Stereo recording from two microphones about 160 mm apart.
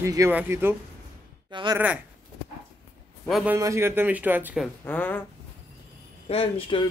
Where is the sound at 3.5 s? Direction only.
15° right (ahead or behind).